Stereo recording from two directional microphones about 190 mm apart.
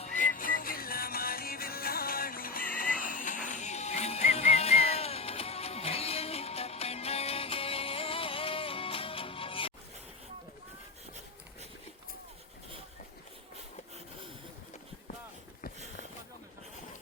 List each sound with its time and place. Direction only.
0.0 s music: 40° left (ahead or behind)